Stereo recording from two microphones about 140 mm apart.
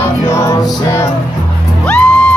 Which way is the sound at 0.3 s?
20° left (ahead or behind).